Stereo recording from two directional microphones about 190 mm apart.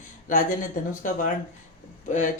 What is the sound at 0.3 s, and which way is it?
Speech, 45° left (ahead or behind).